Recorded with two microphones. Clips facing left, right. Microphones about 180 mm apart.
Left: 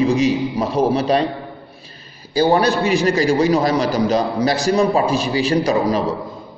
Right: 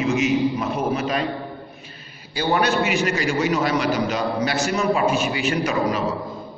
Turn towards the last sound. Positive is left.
turn(degrees=35)  # may be behind; listen again after turning